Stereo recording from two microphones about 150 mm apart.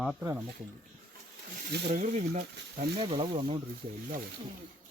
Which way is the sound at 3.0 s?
40° right (ahead or behind).